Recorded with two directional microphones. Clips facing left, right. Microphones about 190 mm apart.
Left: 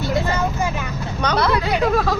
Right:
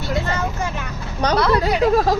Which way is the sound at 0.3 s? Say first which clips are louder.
Left 2 dB; 5° left (ahead or behind).